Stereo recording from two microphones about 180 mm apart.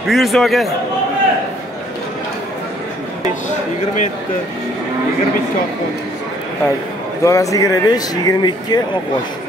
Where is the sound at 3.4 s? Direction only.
40° left (ahead or behind).